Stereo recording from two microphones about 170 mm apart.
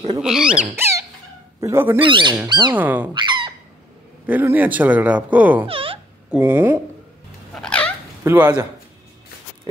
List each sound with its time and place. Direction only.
0.2 s speech: 5° right (ahead or behind)
2.0 s speech: 30° right (ahead or behind)
2.7 s speech: 10° right (ahead or behind)
3.1 s fowl: 25° right (ahead or behind)
4.3 s speech: 10° right (ahead or behind)
5.7 s a sound: 35° right (ahead or behind)
6.3 s speech: 10° right (ahead or behind)
7.5 s cat: 5° left (ahead or behind)
8.2 s speech: 10° right (ahead or behind)